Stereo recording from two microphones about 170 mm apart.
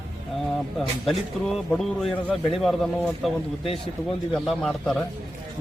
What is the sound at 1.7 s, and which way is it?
A man's voice, centre (ahead or behind).